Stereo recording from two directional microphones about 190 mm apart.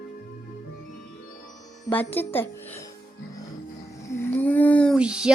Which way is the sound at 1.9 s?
10° left (ahead or behind).